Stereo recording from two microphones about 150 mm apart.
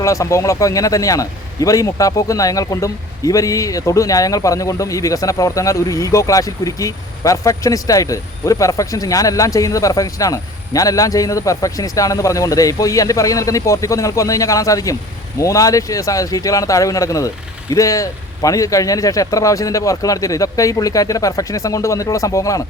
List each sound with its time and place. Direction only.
0.0 s a man's voice: 20° left (ahead or behind)